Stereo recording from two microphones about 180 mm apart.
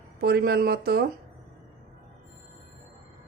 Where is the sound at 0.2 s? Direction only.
60° right (ahead or behind).